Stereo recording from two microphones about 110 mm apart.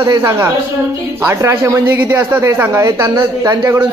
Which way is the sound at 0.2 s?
25° right (ahead or behind).